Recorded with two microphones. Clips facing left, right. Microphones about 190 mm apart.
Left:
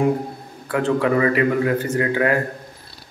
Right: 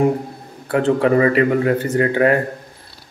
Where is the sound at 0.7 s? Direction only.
30° right (ahead or behind).